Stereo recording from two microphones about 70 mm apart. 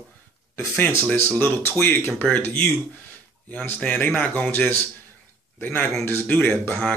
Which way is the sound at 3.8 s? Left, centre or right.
Left.